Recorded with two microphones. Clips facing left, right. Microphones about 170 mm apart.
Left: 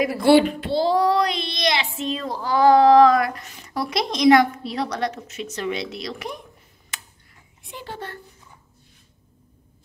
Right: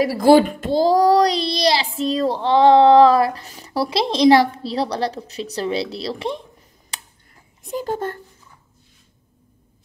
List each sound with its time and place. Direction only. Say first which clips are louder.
0.0 s a child's voice: right 3 dB; 35° right (ahead or behind)
6.9 s tick: right 2 dB; 30° right (ahead or behind)
7.6 s speech: right 11 dB; 40° right (ahead or behind)